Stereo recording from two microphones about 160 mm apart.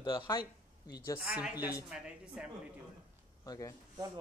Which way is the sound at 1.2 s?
5° right (ahead or behind).